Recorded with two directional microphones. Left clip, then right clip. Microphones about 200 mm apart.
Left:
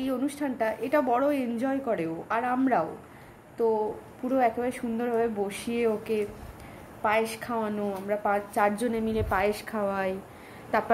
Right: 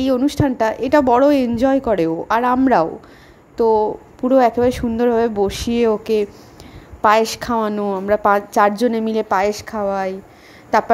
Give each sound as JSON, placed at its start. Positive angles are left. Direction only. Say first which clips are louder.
{"t": 0.0, "sound": "a woman's voice", "louder": "right 13 dB", "side_deg": -40}
{"t": 10.7, "sound": "a woman's voice", "louder": "right 11 dB", "side_deg": -40}